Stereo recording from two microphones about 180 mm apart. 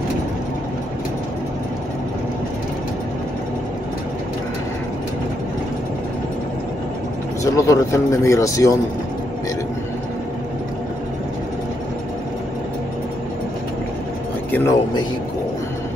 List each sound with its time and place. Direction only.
7.5 s speech: 15° left (ahead or behind)